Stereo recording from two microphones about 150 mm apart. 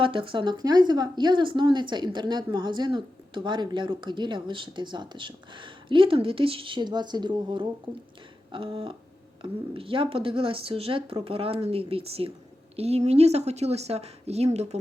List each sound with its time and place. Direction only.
0.0 s a woman's voice: 35° right (ahead or behind)